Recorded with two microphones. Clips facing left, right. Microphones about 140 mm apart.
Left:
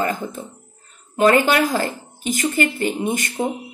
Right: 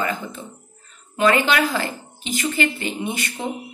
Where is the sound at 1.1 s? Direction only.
40° left (ahead or behind).